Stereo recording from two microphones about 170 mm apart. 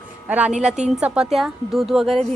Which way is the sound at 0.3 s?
10° right (ahead or behind).